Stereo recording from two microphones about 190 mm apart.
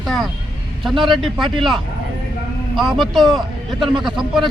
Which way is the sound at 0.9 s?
Centre (ahead or behind).